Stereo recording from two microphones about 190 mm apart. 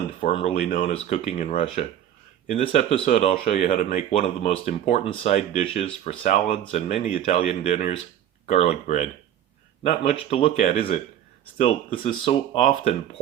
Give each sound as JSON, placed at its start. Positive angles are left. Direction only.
{"t": 0.2, "sound": "speech", "side_deg": 35}